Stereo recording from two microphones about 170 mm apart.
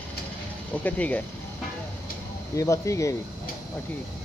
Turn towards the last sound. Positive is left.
turn(degrees=20)  # may be behind; listen again after turning